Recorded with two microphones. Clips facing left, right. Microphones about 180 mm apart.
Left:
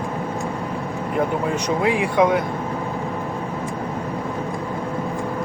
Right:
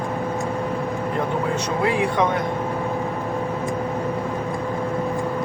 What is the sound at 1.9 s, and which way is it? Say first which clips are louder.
Speech: left 4 dB; 10° left (ahead or behind).